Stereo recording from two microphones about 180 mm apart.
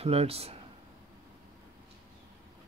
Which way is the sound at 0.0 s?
35° right (ahead or behind).